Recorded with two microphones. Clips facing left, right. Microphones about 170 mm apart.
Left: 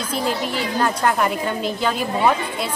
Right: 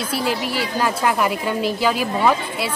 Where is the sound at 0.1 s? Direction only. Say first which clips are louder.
Left 1 dB; 5° right (ahead or behind).